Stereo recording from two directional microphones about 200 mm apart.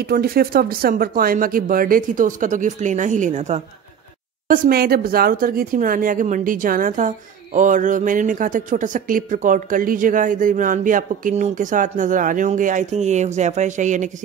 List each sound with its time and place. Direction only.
0.0 s speech: 50° right (ahead or behind)
4.5 s speech: 45° right (ahead or behind)